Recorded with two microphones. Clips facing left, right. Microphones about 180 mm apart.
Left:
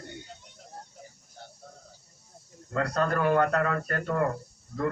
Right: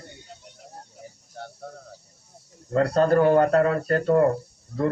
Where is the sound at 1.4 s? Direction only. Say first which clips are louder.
Right 10 dB; 70° right (ahead or behind).